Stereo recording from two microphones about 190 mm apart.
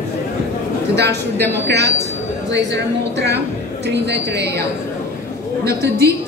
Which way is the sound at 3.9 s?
60° right (ahead or behind).